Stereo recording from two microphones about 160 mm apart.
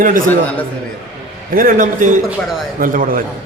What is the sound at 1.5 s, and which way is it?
A man's voice, 60° right (ahead or behind).